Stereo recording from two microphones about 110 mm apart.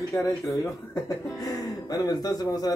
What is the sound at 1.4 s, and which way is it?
Speech, 35° left (ahead or behind).